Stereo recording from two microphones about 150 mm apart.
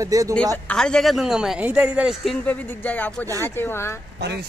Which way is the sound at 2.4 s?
10° left (ahead or behind).